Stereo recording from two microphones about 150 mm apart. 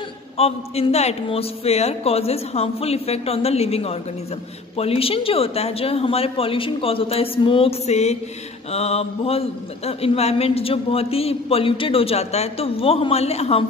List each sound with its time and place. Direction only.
0.4 s a man's voice: 40° left (ahead or behind)